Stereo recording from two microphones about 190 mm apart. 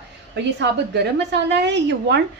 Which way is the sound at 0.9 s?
65° right (ahead or behind).